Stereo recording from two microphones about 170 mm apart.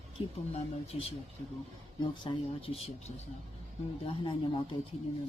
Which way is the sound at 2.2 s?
35° left (ahead or behind).